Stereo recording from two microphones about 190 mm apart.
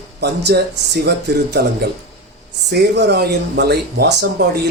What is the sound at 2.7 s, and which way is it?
Speech, 60° right (ahead or behind).